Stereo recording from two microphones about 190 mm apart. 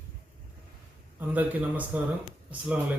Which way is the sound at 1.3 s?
10° right (ahead or behind).